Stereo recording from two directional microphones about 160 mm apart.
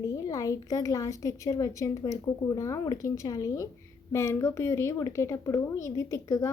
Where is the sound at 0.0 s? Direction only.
20° left (ahead or behind).